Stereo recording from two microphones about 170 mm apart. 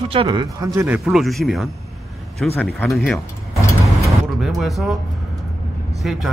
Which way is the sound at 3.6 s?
15° left (ahead or behind).